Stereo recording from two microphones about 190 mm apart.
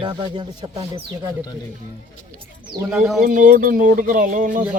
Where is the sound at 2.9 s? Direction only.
5° right (ahead or behind).